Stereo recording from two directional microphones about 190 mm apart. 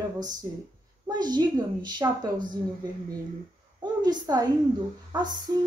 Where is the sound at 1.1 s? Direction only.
20° right (ahead or behind).